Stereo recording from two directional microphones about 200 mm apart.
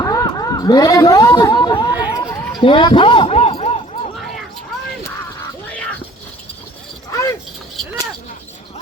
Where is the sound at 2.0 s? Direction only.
20° left (ahead or behind).